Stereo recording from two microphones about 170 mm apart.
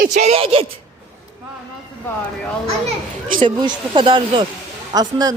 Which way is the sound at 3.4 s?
30° right (ahead or behind).